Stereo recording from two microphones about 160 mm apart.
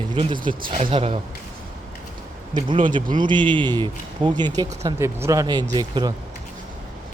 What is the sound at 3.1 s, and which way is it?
Speech, 30° right (ahead or behind).